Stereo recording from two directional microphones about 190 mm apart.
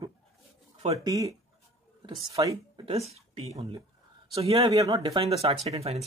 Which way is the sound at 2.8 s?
35° right (ahead or behind).